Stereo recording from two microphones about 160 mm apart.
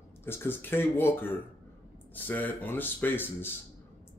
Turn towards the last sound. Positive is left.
turn(degrees=15)  # may be behind; listen again after turning